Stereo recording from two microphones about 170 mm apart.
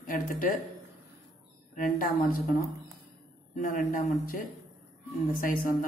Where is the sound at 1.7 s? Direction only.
55° left (ahead or behind).